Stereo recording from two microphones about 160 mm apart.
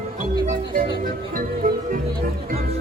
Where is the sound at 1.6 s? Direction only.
60° right (ahead or behind).